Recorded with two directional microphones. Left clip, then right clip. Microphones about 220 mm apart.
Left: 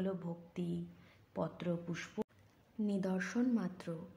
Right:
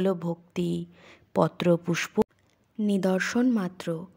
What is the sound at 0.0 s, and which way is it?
A woman's voice, 45° right (ahead or behind).